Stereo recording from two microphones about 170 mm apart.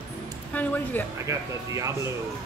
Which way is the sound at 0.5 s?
10° left (ahead or behind).